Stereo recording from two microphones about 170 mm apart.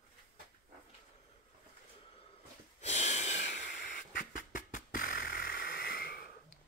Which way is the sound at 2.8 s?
45° left (ahead or behind).